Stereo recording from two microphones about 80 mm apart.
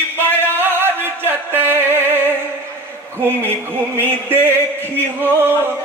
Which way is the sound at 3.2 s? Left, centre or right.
Right.